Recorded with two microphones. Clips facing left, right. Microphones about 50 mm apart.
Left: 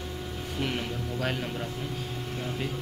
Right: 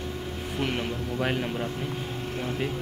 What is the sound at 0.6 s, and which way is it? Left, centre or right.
Speech, right.